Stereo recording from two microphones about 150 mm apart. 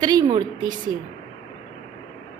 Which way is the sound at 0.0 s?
25° right (ahead or behind).